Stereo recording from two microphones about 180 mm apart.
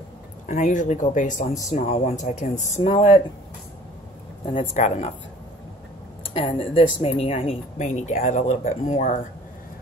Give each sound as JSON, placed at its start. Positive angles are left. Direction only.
{"t": 0.5, "sound": "speech", "side_deg": 45}
{"t": 4.5, "sound": "speech", "side_deg": 35}
{"t": 6.2, "sound": "speech", "side_deg": 30}